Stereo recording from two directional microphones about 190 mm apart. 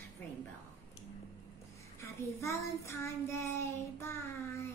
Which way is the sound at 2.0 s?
15° left (ahead or behind).